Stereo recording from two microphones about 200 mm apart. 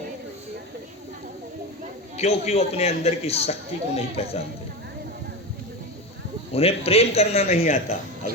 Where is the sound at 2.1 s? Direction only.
30° left (ahead or behind).